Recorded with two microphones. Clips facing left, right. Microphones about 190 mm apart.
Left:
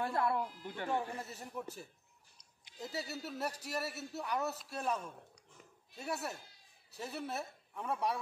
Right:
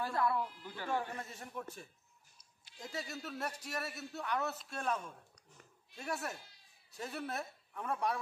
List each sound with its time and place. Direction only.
0.0 s speech: 25° left (ahead or behind)
1.1 s a man's voice: 5° left (ahead or behind)